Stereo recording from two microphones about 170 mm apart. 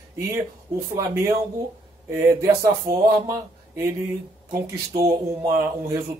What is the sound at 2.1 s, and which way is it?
Speech, 15° right (ahead or behind).